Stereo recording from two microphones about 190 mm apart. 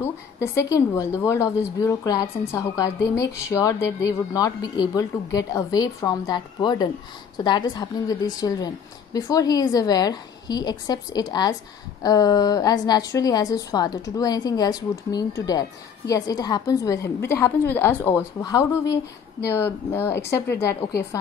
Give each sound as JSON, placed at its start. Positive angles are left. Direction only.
{"t": 0.0, "sound": "a woman's voice", "side_deg": 15}